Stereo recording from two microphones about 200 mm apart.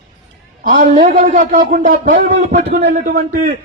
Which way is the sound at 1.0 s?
45° right (ahead or behind).